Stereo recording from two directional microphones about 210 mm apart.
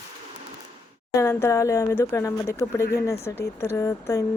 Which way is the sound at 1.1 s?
15° left (ahead or behind).